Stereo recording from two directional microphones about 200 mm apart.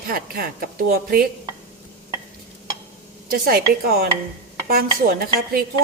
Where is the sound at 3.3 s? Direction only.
50° right (ahead or behind).